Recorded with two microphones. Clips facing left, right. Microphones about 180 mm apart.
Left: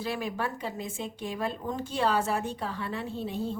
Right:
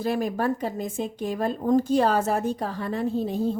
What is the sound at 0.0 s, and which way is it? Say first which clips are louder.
A woman's voice: right 7 dB; 45° right (ahead or behind).